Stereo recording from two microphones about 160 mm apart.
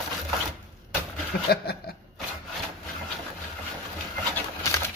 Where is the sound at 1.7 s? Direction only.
80° left.